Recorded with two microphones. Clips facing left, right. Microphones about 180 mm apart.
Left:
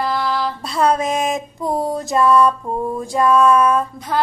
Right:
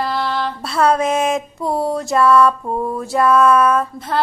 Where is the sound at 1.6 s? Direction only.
Centre (ahead or behind).